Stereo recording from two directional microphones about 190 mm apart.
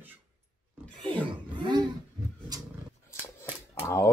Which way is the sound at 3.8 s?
15° left (ahead or behind).